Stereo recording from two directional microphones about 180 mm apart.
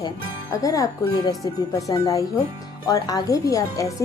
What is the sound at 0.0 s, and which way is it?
Speech, 20° left (ahead or behind).